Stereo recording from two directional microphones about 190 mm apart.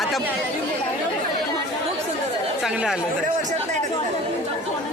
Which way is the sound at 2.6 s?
Centre (ahead or behind).